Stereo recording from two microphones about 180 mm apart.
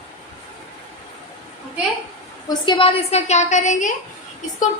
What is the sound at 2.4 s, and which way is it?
A woman's voice, 25° left (ahead or behind).